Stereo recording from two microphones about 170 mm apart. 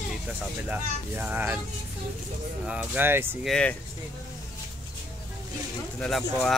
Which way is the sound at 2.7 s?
10° right (ahead or behind).